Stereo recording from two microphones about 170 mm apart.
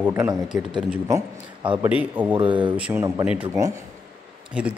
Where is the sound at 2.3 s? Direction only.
30° right (ahead or behind).